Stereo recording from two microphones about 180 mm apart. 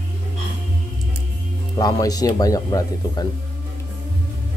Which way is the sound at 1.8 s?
20° left (ahead or behind).